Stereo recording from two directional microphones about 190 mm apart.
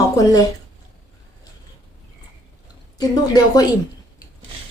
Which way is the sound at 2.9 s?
20° left (ahead or behind).